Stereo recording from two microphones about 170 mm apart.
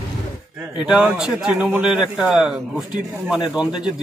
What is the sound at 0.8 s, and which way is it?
Speech, 5° right (ahead or behind).